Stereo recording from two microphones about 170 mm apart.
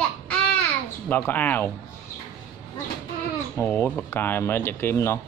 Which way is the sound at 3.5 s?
10° left (ahead or behind).